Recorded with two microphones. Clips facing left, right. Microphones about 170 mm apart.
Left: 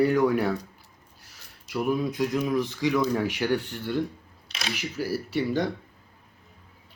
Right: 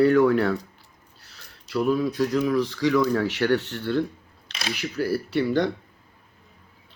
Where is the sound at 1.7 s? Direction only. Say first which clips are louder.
Right 3 dB; 15° left (ahead or behind).